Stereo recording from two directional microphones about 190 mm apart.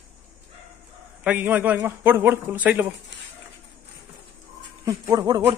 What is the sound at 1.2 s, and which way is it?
A man's voice, 10° right (ahead or behind).